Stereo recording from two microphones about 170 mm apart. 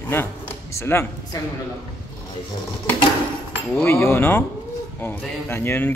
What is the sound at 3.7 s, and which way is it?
A man's voice, 15° left (ahead or behind).